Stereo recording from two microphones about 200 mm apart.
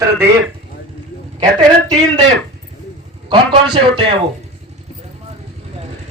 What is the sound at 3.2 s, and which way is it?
Speech, 25° right (ahead or behind).